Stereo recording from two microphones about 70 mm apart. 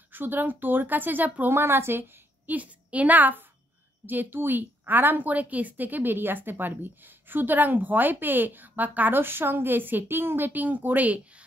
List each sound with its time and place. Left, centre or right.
0.1 s a woman's voice: right